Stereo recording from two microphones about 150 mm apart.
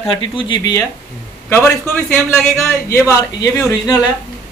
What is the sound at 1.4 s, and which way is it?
Speech, 15° left (ahead or behind).